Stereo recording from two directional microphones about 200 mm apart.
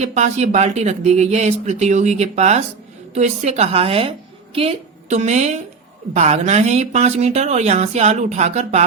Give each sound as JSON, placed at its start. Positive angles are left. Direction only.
{"t": 0.0, "sound": "a woman's voice", "side_deg": -35}